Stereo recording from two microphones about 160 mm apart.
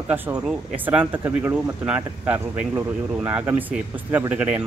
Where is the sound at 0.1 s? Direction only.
10° right (ahead or behind).